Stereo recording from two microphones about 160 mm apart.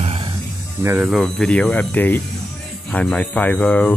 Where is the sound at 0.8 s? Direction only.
10° right (ahead or behind).